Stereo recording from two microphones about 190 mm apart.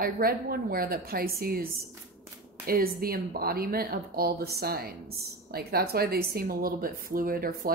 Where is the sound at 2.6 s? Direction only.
50° right (ahead or behind).